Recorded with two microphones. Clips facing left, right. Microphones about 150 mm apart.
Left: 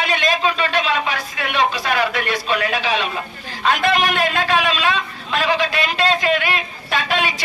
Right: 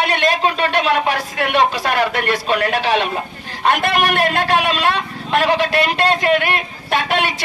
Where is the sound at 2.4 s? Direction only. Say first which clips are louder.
Right 3 dB; 65° right (ahead or behind).